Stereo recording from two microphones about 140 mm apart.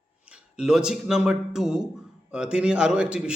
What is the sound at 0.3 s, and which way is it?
A man's voice, 5° right (ahead or behind).